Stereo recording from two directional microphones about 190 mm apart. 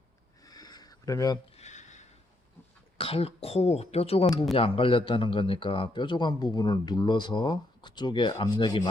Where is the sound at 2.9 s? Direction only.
30° left (ahead or behind).